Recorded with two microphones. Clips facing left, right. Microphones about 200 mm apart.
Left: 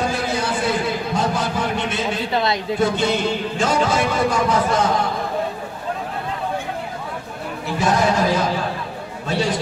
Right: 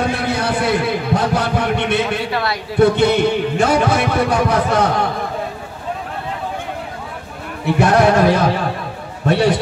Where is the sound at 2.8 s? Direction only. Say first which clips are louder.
Right 8 dB; 60° right (ahead or behind).